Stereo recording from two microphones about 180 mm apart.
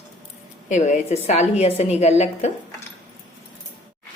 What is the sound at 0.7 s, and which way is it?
A woman's voice, 40° left (ahead or behind).